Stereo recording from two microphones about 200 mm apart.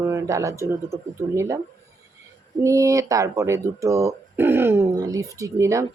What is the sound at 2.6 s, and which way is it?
Speech, 15° right (ahead or behind).